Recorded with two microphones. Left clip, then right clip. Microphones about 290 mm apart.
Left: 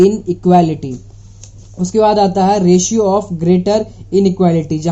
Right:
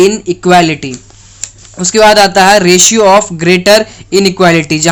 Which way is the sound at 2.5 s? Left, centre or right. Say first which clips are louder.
Right 7 dB; centre.